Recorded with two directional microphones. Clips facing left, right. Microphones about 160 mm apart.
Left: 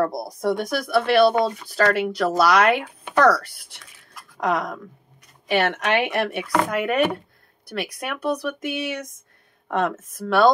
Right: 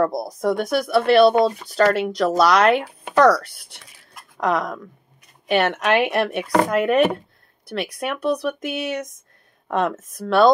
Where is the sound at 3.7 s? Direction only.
20° right (ahead or behind).